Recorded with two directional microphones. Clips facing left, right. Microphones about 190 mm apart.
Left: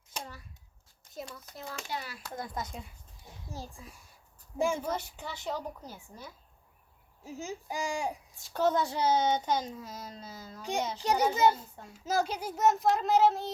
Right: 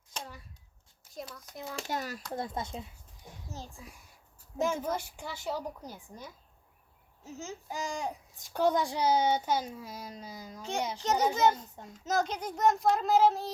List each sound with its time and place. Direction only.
1.3 s a child's voice: 5° left (ahead or behind)
1.9 s a child's voice: 45° right (ahead or behind)
2.3 s speech: 25° right (ahead or behind)
4.5 s speech: 10° left (ahead or behind)
4.9 s a child's voice: 10° right (ahead or behind)
7.3 s speech: 15° left (ahead or behind)
8.4 s a child's voice: 15° right (ahead or behind)
10.6 s a child's voice: 15° left (ahead or behind)